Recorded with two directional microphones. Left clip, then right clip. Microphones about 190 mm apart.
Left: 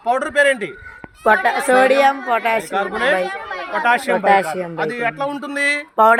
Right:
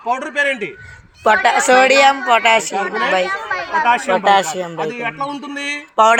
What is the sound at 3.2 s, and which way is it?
Speech, 20° left (ahead or behind).